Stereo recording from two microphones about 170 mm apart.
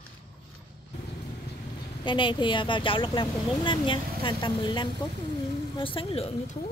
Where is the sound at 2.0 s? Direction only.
30° left (ahead or behind).